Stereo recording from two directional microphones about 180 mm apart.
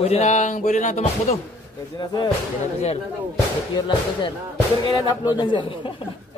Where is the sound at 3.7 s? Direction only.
25° left (ahead or behind).